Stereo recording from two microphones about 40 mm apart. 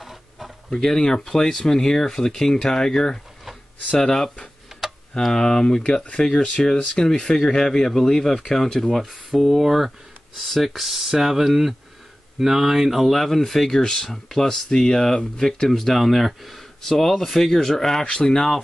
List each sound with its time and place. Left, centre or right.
0.0 s a sound: centre
0.7 s speech: centre
9.0 s speech: centre
13.0 s speech: centre
13.8 s speech: centre